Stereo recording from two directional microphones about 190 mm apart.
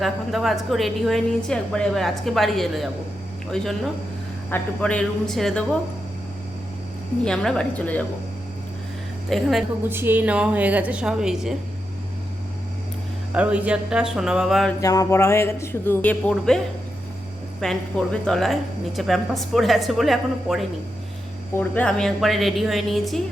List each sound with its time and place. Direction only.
0.0 s speech: centre (ahead or behind)
7.3 s speech: 5° left (ahead or behind)
9.3 s a woman's voice: centre (ahead or behind)
13.3 s speech: 5° right (ahead or behind)
14.8 s a woman's voice: 20° left (ahead or behind)
17.6 s speech: 5° left (ahead or behind)